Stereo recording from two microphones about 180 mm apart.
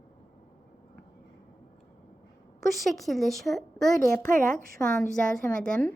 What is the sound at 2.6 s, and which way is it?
A woman's voice, centre (ahead or behind).